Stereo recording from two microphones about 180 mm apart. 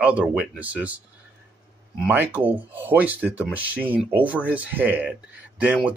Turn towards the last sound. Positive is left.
turn(degrees=-10)  # may be behind; listen again after turning